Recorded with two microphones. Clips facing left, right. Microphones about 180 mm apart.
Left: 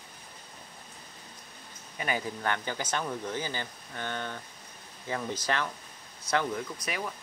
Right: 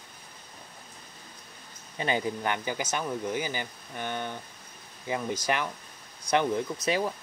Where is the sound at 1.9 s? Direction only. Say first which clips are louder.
Right 4 dB; 25° right (ahead or behind).